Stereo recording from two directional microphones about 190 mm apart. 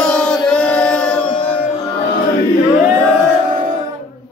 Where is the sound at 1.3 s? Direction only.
30° left (ahead or behind).